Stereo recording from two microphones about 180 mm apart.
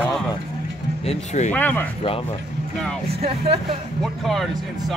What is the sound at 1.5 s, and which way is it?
Speech, 10° left (ahead or behind).